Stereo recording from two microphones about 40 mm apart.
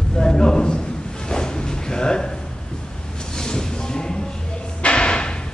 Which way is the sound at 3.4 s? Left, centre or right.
Centre.